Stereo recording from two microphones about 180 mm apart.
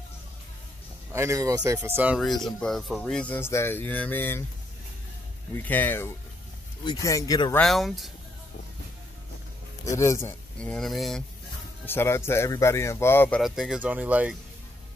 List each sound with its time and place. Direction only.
1.1 s speech: 15° right (ahead or behind)
2.1 s speech: centre (ahead or behind)
5.5 s speech: 10° left (ahead or behind)
7.5 s speech: centre (ahead or behind)
9.8 s speech: 15° left (ahead or behind)
11.8 s speech: 10° left (ahead or behind)
13.4 s speech: centre (ahead or behind)